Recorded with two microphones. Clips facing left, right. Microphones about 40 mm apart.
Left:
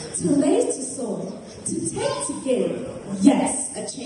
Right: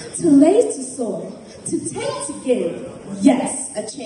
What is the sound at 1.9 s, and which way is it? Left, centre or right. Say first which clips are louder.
Speech: even; right.